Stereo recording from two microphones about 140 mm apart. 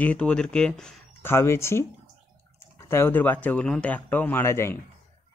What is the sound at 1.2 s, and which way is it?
Speech, 20° left (ahead or behind).